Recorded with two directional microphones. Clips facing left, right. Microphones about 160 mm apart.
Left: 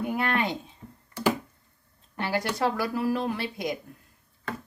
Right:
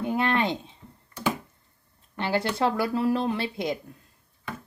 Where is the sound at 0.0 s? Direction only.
25° right (ahead or behind).